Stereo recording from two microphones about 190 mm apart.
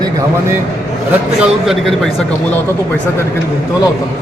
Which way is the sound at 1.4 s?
Centre (ahead or behind).